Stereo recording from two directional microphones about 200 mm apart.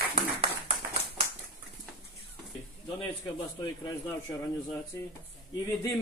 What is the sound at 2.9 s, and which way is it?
A man's voice, 20° left (ahead or behind).